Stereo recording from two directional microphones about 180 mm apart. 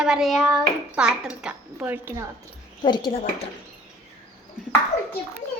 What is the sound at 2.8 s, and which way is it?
Speech, 25° left (ahead or behind).